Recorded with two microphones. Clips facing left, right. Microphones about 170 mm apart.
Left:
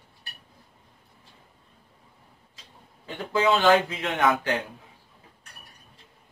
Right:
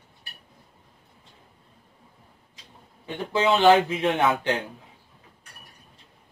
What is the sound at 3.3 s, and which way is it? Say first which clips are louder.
Speech: right 2 dB; 25° right (ahead or behind).